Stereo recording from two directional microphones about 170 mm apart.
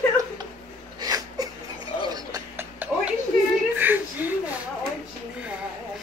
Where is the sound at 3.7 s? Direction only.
10° right (ahead or behind).